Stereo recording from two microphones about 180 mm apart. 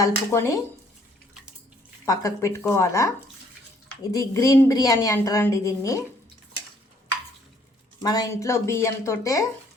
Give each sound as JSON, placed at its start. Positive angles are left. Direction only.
{"t": 0.0, "sound": "speech", "side_deg": 15}
{"t": 2.0, "sound": "speech", "side_deg": 15}
{"t": 4.1, "sound": "a woman's voice", "side_deg": 20}
{"t": 8.0, "sound": "speech", "side_deg": 20}